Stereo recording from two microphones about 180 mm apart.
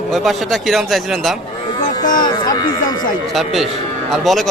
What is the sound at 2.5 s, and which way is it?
Speech, 20° left (ahead or behind).